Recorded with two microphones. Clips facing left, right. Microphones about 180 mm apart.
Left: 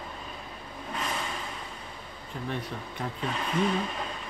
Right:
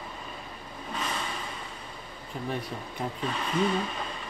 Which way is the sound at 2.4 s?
10° right (ahead or behind).